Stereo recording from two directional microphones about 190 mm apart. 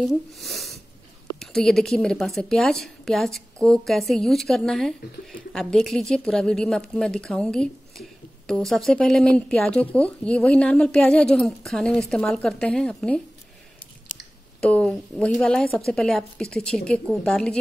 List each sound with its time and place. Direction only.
0.0 s a woman's voice: centre (ahead or behind)
14.6 s a woman's voice: 5° left (ahead or behind)